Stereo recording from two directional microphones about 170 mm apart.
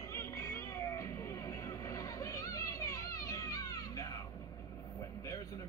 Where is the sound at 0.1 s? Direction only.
15° left (ahead or behind).